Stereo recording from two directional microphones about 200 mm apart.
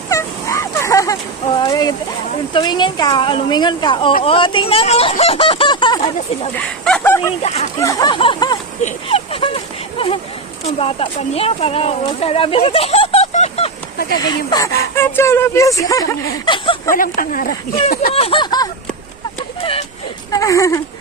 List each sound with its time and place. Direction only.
0.1 s a sound: 15° left (ahead or behind)
2.5 s speech: 25° left (ahead or behind)
6.6 s speech: 5° left (ahead or behind)
7.2 s speech: 30° left (ahead or behind)
7.8 s speech: 15° left (ahead or behind)
10.8 s speech: 25° left (ahead or behind)
14.2 s speech: 20° left (ahead or behind)
16.9 s speech: 45° left (ahead or behind)
18.1 s speech: 30° left (ahead or behind)
20.3 s speech: 15° left (ahead or behind)